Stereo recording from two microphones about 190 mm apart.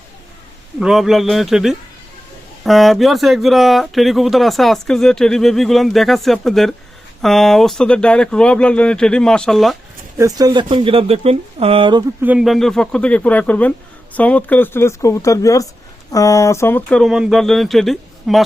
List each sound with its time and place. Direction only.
0.8 s speech: centre (ahead or behind)
10.2 s speech: 20° right (ahead or behind)
12.2 s speech: 5° right (ahead or behind)